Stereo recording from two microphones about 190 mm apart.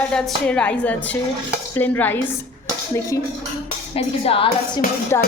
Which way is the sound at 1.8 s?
10° left (ahead or behind).